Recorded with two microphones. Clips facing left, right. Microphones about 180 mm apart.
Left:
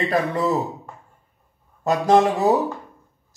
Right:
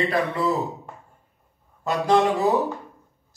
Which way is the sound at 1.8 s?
45° left (ahead or behind).